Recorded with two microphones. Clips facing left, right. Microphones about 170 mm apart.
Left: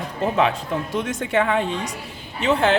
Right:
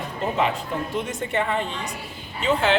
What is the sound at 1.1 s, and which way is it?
Speech, 90° left.